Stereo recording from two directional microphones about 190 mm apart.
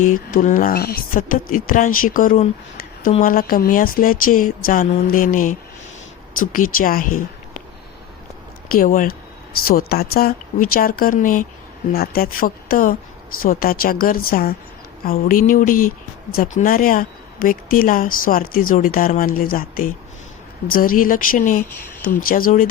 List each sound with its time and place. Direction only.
0.0 s speech: 45° left (ahead or behind)
8.7 s speech: 45° left (ahead or behind)